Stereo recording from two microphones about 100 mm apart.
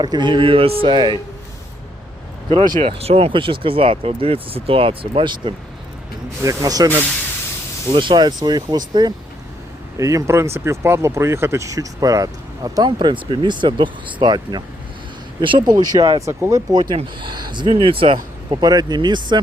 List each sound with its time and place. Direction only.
0.0 s speech: 50° right (ahead or behind)
2.8 s speech: 85° right; by 5.5 s 55° right (ahead or behind)
6.4 s speech: 35° right (ahead or behind)
7.9 s speech: 55° right (ahead or behind)
10.0 s speech: 30° right (ahead or behind)
13.0 s speech: 50° right (ahead or behind)
16.2 s speech: 30° right (ahead or behind)
16.9 s speech: 55° right (ahead or behind)
17.7 s speech: 65° right (ahead or behind)
18.5 s speech: 40° right (ahead or behind)